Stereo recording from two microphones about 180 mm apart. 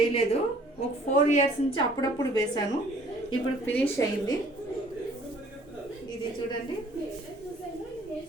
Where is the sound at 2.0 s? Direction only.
20° left (ahead or behind).